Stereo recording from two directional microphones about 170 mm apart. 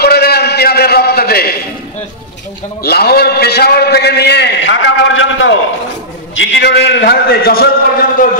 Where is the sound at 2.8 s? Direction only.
65° left (ahead or behind).